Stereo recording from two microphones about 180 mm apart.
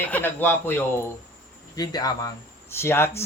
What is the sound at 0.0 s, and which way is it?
Speech, 10° left (ahead or behind).